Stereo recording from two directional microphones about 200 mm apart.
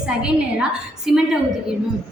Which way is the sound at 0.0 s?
5° right (ahead or behind).